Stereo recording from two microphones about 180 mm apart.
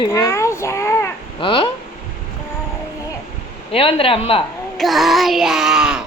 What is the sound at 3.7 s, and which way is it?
Speech, 30° left (ahead or behind).